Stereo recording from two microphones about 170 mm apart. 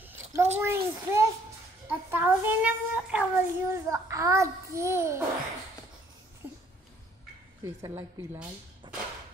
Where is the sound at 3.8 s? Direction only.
20° right (ahead or behind).